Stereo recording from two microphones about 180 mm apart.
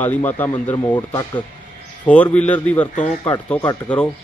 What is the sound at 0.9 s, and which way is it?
Speech, 25° left (ahead or behind).